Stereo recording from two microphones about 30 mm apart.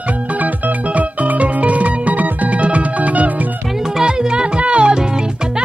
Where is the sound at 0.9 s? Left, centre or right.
Right.